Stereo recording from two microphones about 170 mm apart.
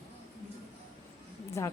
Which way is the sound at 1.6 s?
15° left (ahead or behind).